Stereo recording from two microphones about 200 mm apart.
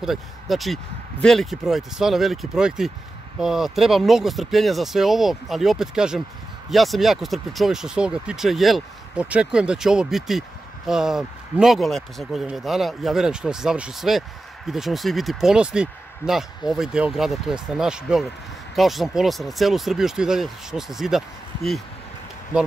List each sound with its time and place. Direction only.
0.0 s speech: centre (ahead or behind)